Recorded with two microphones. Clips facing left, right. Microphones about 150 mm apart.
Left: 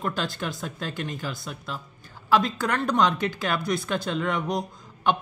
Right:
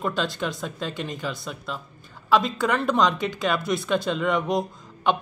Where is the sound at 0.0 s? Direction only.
Centre (ahead or behind).